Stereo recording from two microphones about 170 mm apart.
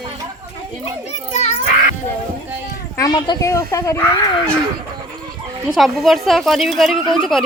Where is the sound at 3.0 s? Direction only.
25° left (ahead or behind).